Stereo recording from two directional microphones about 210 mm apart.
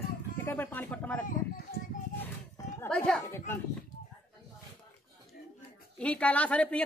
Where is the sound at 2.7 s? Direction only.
5° left (ahead or behind).